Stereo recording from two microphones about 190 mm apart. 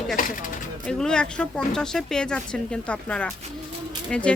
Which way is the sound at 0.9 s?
5° left (ahead or behind).